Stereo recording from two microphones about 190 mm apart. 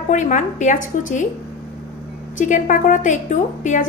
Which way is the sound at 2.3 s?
45° left (ahead or behind).